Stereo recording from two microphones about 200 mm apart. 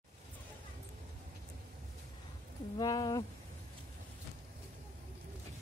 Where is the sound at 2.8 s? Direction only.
20° left (ahead or behind).